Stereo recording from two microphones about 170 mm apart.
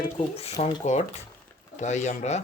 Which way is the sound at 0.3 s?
40° left (ahead or behind).